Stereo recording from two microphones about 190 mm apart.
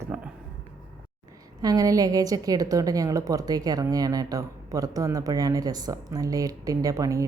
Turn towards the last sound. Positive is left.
turn(degrees=-15)  # may be behind; listen again after turning